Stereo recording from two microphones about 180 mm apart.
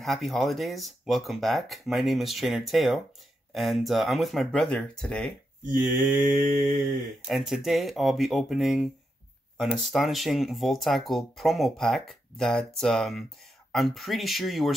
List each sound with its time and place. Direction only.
0.0 s speech: centre (ahead or behind)
6.2 s mantra: 50° right (ahead or behind)
7.2 s speech: centre (ahead or behind)